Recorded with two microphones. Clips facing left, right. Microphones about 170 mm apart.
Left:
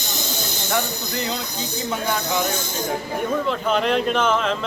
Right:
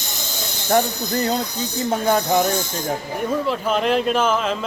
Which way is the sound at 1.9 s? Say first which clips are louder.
Right 6 dB; 45° right (ahead or behind).